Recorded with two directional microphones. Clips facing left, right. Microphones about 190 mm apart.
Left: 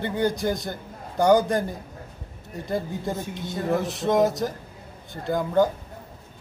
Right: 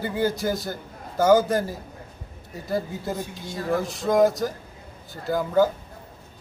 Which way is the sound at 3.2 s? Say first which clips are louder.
Left 2 dB; 20° left (ahead or behind).